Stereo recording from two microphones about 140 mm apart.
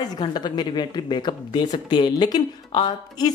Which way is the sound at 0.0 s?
30° left (ahead or behind).